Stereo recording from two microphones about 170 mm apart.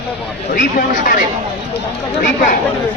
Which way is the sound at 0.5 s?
55° left (ahead or behind).